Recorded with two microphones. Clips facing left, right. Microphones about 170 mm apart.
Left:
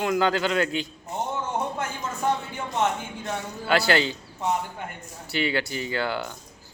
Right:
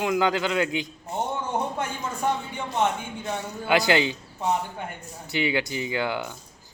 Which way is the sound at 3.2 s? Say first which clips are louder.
Right 1 dB; 15° right (ahead or behind).